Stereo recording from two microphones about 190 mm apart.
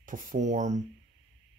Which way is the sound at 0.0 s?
45° right (ahead or behind).